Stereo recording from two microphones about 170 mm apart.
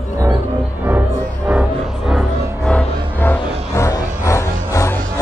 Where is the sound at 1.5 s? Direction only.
5° right (ahead or behind).